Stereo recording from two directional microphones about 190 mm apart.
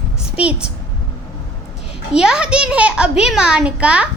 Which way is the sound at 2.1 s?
5° right (ahead or behind).